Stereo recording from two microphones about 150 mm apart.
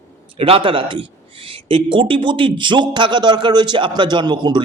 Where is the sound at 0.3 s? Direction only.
40° right (ahead or behind).